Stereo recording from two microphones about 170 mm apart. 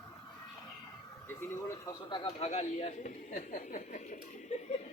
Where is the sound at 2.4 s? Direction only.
40° left (ahead or behind).